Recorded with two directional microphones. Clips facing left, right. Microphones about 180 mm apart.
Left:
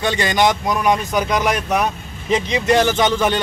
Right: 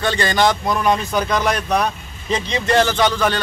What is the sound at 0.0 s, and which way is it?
Speech, 15° left (ahead or behind).